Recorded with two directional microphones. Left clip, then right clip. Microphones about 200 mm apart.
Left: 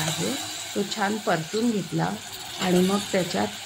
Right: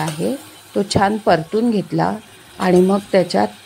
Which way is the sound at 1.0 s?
35° right (ahead or behind).